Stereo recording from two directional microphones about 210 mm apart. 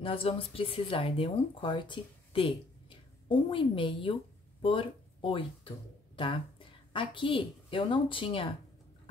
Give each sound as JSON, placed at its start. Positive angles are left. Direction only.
{"t": 0.0, "sound": "a woman's voice", "side_deg": 25}